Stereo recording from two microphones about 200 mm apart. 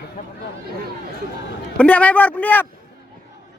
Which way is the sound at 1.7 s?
5° left (ahead or behind).